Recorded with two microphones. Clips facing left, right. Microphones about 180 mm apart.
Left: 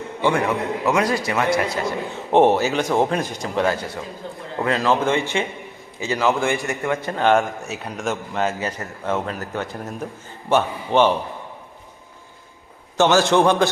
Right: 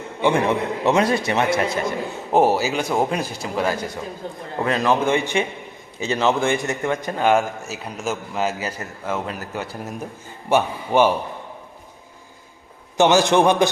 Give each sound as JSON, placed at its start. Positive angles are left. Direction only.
{"t": 0.2, "sound": "a man's voice", "side_deg": -20}
{"t": 2.3, "sound": "a man's voice", "side_deg": -5}
{"t": 13.0, "sound": "a man's voice", "side_deg": -15}